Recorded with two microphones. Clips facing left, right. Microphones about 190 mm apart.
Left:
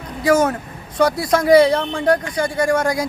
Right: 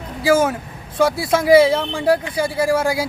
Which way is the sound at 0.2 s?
5° right (ahead or behind).